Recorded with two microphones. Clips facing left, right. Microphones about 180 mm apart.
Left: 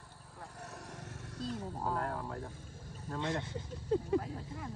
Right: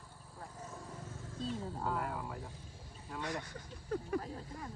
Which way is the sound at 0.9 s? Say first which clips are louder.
Even; 75° left (ahead or behind).